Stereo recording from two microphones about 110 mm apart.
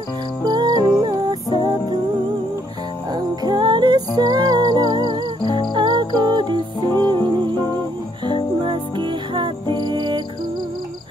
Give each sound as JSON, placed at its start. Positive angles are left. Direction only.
{"t": 0.5, "sound": "music", "side_deg": -40}
{"t": 3.1, "sound": "music", "side_deg": -40}
{"t": 5.4, "sound": "music", "side_deg": 45}
{"t": 5.8, "sound": "music", "side_deg": -45}
{"t": 8.6, "sound": "music", "side_deg": -45}